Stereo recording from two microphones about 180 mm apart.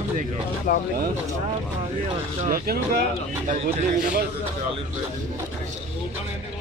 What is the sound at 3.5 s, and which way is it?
Speech, 45° right (ahead or behind).